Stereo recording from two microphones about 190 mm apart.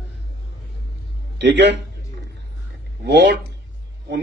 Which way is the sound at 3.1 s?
70° right (ahead or behind).